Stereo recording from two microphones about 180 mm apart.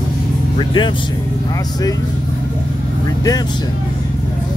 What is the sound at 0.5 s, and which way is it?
Speech, 25° left (ahead or behind).